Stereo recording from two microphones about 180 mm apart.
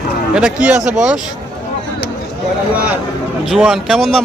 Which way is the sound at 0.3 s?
5° right (ahead or behind).